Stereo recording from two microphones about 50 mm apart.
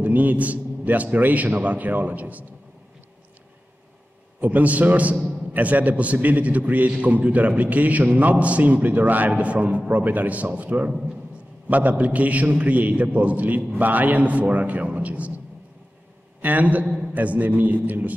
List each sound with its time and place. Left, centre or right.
0.0 s a man's voice: right
4.4 s a man's voice: right